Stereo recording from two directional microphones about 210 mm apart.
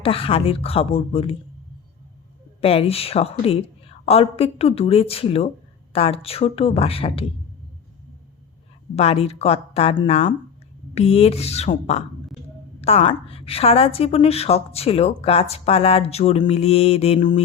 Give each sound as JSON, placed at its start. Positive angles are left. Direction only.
{"t": 0.0, "sound": "a woman's voice", "side_deg": 25}
{"t": 2.6, "sound": "a woman's voice", "side_deg": 30}
{"t": 9.0, "sound": "a woman's voice", "side_deg": 30}